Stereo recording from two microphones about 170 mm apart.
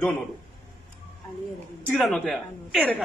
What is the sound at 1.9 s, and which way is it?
A man's voice, centre (ahead or behind).